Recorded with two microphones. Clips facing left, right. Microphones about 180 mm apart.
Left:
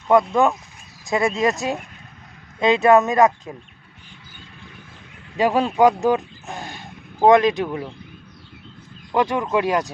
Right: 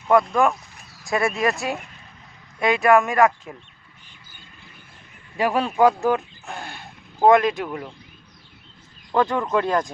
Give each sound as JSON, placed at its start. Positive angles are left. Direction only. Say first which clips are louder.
{"t": 0.4, "sound": "speech", "louder": "left 2 dB", "side_deg": 20}
{"t": 5.4, "sound": "speech", "louder": "left 2 dB", "side_deg": 20}
{"t": 9.1, "sound": "speech", "louder": "left 1 dB", "side_deg": 10}